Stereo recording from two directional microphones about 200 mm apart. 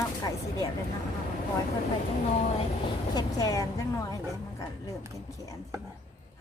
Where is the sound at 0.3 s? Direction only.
20° left (ahead or behind).